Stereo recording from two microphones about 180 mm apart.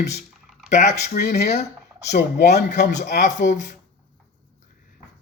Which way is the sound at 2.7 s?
40° left (ahead or behind).